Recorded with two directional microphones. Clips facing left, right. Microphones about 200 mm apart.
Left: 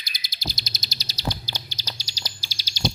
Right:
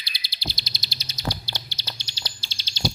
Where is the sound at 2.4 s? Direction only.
10° left (ahead or behind).